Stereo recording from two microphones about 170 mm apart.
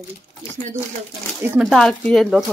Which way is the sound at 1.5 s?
Centre (ahead or behind).